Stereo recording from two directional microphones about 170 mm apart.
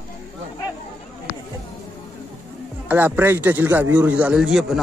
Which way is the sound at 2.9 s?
10° right (ahead or behind).